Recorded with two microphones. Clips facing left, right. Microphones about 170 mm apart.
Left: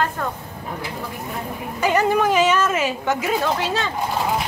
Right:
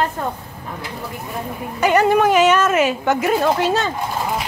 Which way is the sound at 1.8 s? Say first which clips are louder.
Right 4 dB; 65° right (ahead or behind).